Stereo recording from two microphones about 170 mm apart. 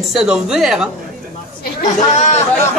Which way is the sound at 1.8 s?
45° left (ahead or behind).